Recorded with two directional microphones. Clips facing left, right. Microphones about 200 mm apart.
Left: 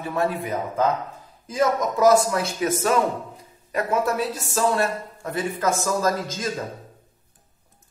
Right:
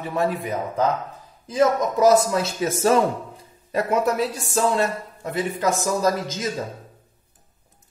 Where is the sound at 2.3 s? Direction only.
25° right (ahead or behind).